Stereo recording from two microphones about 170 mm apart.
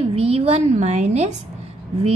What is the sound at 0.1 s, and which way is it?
A woman's voice, 35° right (ahead or behind).